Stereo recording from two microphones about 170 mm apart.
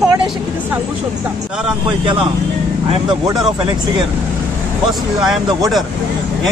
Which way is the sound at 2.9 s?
25° right (ahead or behind).